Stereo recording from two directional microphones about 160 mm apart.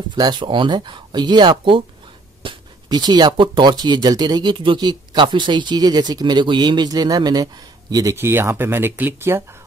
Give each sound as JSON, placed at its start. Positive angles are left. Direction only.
{"t": 0.1, "sound": "speech", "side_deg": -25}